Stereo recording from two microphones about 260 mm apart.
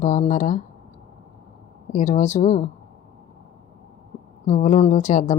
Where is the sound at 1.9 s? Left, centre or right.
Left.